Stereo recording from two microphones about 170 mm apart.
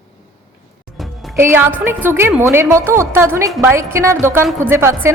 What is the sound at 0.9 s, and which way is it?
Music, centre (ahead or behind).